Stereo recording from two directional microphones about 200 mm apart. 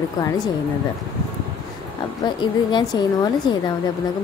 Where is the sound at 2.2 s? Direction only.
20° left (ahead or behind).